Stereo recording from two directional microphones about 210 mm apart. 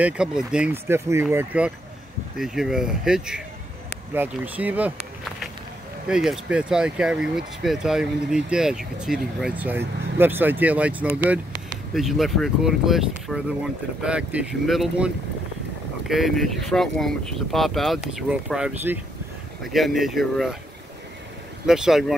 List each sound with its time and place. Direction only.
0.0 s speech: 5° right (ahead or behind)
21.6 s speech: centre (ahead or behind)